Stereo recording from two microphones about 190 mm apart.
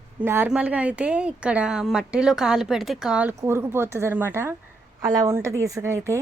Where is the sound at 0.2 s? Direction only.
10° right (ahead or behind).